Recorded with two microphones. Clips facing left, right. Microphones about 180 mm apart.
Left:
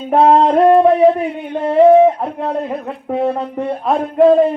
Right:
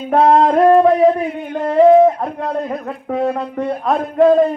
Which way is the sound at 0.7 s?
5° left (ahead or behind).